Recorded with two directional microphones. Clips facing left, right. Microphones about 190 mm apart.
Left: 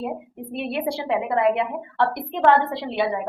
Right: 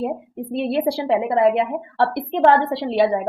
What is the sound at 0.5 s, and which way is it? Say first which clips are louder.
A woman's voice: right 5 dB; 35° right (ahead or behind).